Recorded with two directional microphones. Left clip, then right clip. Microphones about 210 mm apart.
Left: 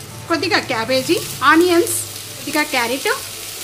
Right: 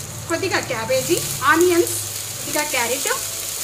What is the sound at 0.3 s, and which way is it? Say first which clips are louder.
Frying: left 4 dB; 55° left (ahead or behind).